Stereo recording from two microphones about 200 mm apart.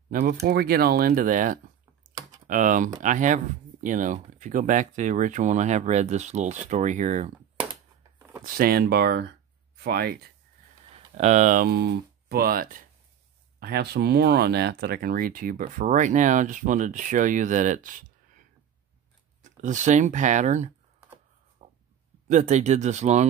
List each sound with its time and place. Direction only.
0.1 s speech: 45° right (ahead or behind)
8.5 s speech: 50° right (ahead or behind)
10.9 s speech: 35° right (ahead or behind)
19.4 s speech: 40° right (ahead or behind)
21.6 s a sound: 35° right (ahead or behind)
22.3 s speech: 35° right (ahead or behind)